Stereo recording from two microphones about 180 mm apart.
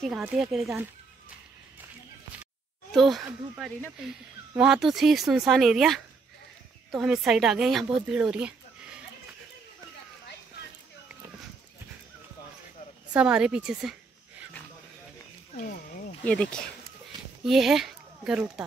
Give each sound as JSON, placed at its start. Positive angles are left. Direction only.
{"t": 0.2, "sound": "speech", "side_deg": -5}
{"t": 2.9, "sound": "speech", "side_deg": 0}
{"t": 13.1, "sound": "speech", "side_deg": -5}
{"t": 15.5, "sound": "wild animals", "side_deg": 50}
{"t": 16.3, "sound": "speech", "side_deg": 5}